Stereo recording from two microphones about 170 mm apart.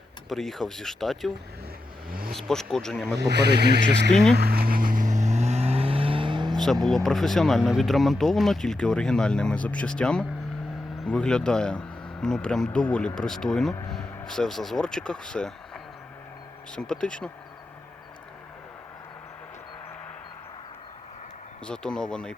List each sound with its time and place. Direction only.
0.3 s speech: centre (ahead or behind)
2.0 s vehicle: 60° right (ahead or behind)
2.3 s speech: 5° left (ahead or behind)
3.2 s speech: 75° right (ahead or behind)
4.4 s vehicle: 65° right (ahead or behind); by 6.5 s 30° right (ahead or behind)
6.5 s vehicle: centre (ahead or behind)
6.8 s speech: centre (ahead or behind)
21.7 s speech: 5° left (ahead or behind)